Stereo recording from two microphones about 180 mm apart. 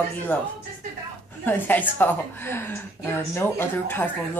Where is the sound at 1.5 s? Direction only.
10° left (ahead or behind).